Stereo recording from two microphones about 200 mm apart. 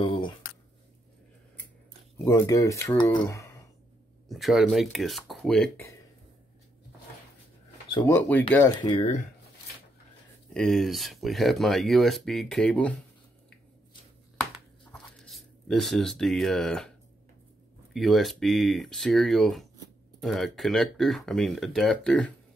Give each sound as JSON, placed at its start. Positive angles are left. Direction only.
{"t": 0.0, "sound": "a sound", "side_deg": 25}
{"t": 2.1, "sound": "speech", "side_deg": 15}
{"t": 4.3, "sound": "speech", "side_deg": 0}
{"t": 8.1, "sound": "speech", "side_deg": 10}
{"t": 10.5, "sound": "speech", "side_deg": 0}
{"t": 14.4, "sound": "shuffling cards", "side_deg": 5}
{"t": 17.9, "sound": "speech", "side_deg": 0}